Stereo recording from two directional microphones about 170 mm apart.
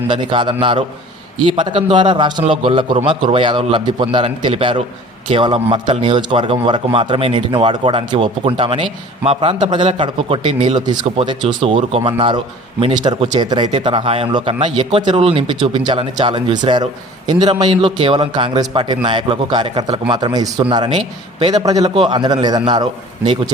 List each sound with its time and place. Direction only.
0.1 s a man's voice: 30° right (ahead or behind)